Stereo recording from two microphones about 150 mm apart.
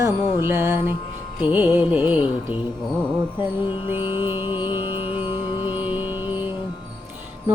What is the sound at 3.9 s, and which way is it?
Mantra, 15° right (ahead or behind).